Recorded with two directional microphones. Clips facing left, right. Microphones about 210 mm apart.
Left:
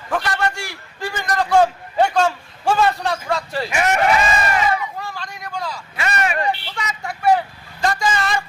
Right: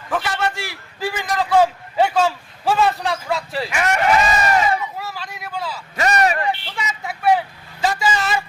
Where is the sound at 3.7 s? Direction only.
25° left (ahead or behind).